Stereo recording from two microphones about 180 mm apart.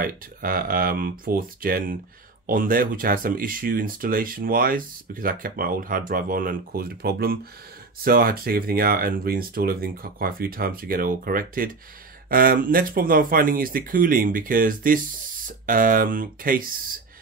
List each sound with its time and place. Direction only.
0.0 s speech: 50° right (ahead or behind)